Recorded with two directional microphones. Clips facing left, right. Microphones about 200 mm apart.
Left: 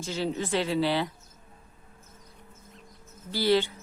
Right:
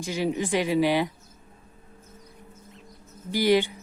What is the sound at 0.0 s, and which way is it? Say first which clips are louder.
A woman's voice: right 3 dB; 15° right (ahead or behind).